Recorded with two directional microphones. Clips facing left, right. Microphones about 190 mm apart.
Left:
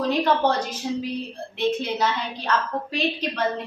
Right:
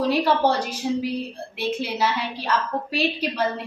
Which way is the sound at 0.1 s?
10° right (ahead or behind).